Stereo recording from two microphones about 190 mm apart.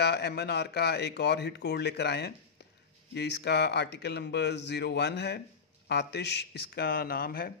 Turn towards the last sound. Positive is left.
turn(degrees=50)  # may be behind; listen again after turning